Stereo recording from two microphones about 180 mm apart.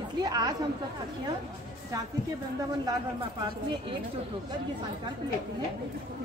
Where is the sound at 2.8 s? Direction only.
30° right (ahead or behind).